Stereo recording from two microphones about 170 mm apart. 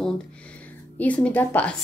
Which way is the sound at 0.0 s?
5° left (ahead or behind).